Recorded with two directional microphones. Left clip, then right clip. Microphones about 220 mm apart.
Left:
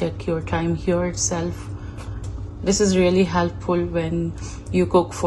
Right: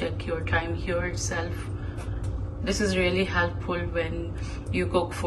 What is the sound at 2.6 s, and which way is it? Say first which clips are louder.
A woman's voice: left 7 dB; 15° left (ahead or behind).